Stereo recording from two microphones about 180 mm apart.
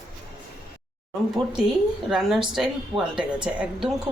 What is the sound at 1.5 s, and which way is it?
Speech, 5° right (ahead or behind).